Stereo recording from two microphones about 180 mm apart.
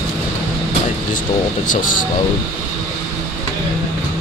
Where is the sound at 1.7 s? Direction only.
50° left (ahead or behind).